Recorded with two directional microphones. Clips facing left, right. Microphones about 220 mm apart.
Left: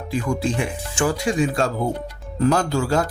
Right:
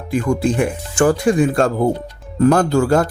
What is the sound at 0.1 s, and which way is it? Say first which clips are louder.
Speech: right 6 dB; 55° right (ahead or behind).